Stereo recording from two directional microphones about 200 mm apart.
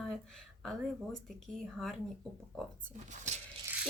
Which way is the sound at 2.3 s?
5° left (ahead or behind).